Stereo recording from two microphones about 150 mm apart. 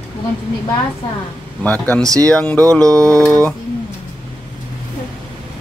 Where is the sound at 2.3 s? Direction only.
5° left (ahead or behind).